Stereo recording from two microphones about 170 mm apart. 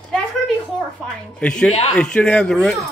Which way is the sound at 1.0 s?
5° left (ahead or behind).